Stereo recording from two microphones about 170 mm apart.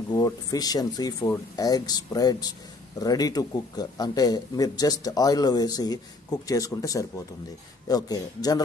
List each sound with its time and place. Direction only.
0.1 s speech: 20° left (ahead or behind)